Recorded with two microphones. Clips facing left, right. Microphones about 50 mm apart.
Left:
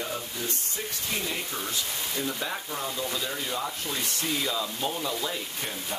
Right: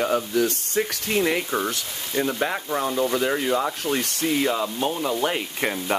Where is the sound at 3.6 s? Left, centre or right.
Right.